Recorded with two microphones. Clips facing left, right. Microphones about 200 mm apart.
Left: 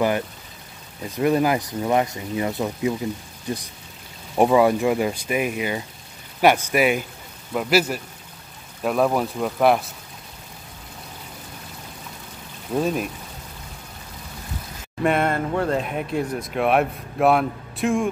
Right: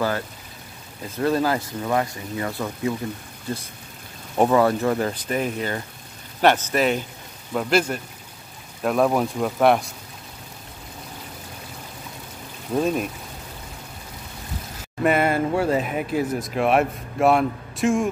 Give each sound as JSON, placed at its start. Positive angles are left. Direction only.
{"t": 1.1, "sound": "speech", "side_deg": 15}
{"t": 12.7, "sound": "speech", "side_deg": 0}
{"t": 15.0, "sound": "speech", "side_deg": -5}